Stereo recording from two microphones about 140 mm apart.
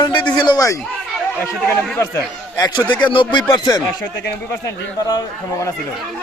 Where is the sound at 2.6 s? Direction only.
30° left (ahead or behind).